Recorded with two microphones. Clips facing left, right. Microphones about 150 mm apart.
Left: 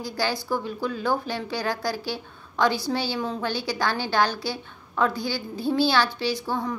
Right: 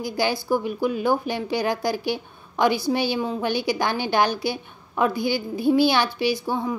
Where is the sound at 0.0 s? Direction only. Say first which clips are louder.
Right 3 dB; 15° right (ahead or behind).